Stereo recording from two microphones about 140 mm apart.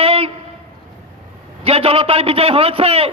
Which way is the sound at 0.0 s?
45° right (ahead or behind).